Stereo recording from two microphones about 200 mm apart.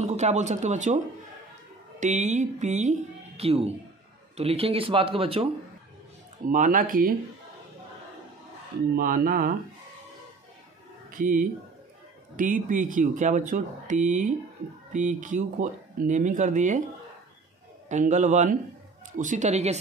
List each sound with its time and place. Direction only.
0.0 s speech: 35° right (ahead or behind)
6.4 s speech: 40° right (ahead or behind)
8.9 s speech: 45° right (ahead or behind)
11.1 s speech: 45° right (ahead or behind)
17.8 s speech: 35° right (ahead or behind)